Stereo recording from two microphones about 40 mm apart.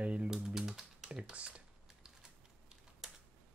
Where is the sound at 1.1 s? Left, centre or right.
Right.